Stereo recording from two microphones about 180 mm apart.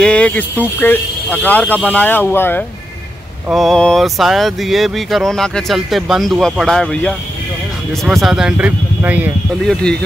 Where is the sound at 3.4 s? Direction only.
Centre (ahead or behind).